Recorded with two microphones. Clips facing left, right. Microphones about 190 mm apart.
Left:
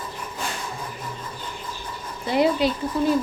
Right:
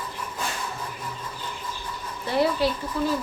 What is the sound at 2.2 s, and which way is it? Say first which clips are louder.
Speech: left 3 dB; 15° left (ahead or behind).